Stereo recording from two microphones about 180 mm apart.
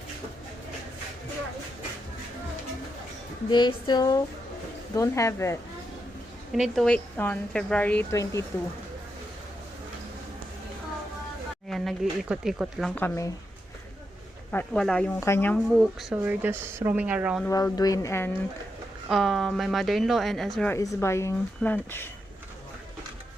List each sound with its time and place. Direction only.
3.5 s speech: 25° left (ahead or behind)
6.5 s speech: centre (ahead or behind); by 8.4 s 15° left (ahead or behind)
11.7 s a woman's voice: centre (ahead or behind)
14.5 s speech: 5° left (ahead or behind)
15.8 s speech: 5° right (ahead or behind)
17.5 s speech: 20° left (ahead or behind)
19.0 s a woman's voice: centre (ahead or behind)
20.7 s speech: 15° left (ahead or behind)